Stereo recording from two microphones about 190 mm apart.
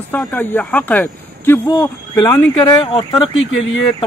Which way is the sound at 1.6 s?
20° left (ahead or behind).